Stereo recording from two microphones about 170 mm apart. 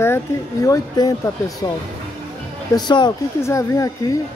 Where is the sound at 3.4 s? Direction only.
15° left (ahead or behind).